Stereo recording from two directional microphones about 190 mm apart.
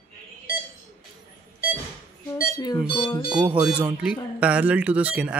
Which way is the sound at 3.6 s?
5° right (ahead or behind).